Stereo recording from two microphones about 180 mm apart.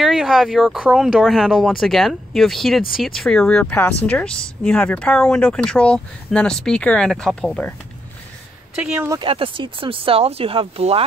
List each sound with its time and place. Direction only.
0.0 s a woman's voice: centre (ahead or behind)
8.8 s speech: 10° right (ahead or behind)
9.2 s speech: 30° right (ahead or behind)